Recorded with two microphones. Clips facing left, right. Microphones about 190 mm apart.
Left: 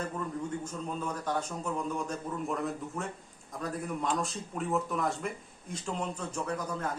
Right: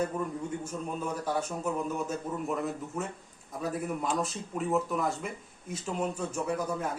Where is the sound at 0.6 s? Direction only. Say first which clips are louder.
Right 1 dB; 10° right (ahead or behind).